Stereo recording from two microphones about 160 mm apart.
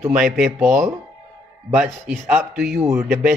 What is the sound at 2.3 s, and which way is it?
Speech, 15° right (ahead or behind).